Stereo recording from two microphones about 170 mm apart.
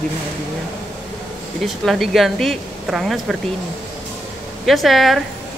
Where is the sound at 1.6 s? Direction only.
Centre (ahead or behind).